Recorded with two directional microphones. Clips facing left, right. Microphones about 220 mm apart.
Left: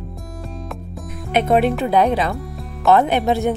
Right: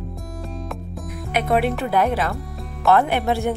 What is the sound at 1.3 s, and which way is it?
Speech, 25° left (ahead or behind).